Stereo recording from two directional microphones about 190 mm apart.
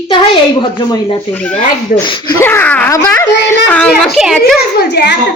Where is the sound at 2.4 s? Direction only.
10° left (ahead or behind).